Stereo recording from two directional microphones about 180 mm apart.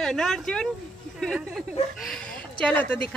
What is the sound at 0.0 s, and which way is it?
A woman's voice, centre (ahead or behind).